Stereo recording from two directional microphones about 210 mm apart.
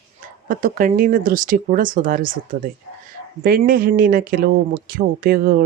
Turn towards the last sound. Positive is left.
turn(degrees=-45)  # may be behind; listen again after turning